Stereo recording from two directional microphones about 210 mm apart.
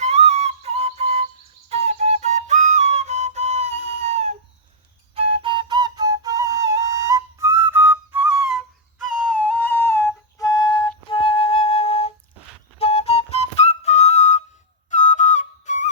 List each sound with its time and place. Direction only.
0.0 s music: 30° right (ahead or behind)
1.7 s flute: 30° right (ahead or behind); by 15.9 s 35° left (ahead or behind)